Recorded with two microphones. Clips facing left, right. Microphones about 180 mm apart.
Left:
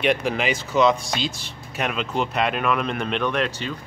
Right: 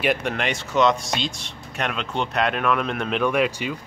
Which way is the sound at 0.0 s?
Centre (ahead or behind).